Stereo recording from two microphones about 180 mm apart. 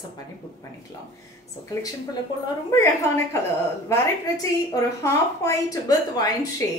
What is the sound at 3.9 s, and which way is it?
A woman's voice, 15° left (ahead or behind).